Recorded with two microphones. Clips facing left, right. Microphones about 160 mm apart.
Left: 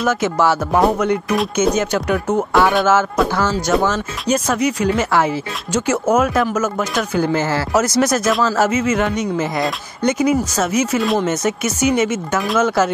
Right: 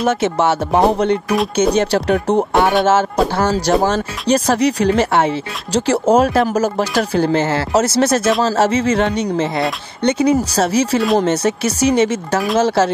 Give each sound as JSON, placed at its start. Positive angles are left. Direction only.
{"t": 0.0, "sound": "speech", "side_deg": -25}